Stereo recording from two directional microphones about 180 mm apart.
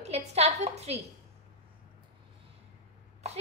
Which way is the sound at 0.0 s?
35° right (ahead or behind).